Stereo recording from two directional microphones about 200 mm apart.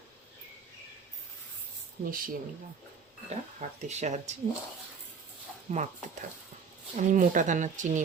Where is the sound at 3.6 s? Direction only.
35° right (ahead or behind).